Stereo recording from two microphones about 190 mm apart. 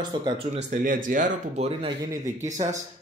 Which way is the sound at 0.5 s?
40° right (ahead or behind).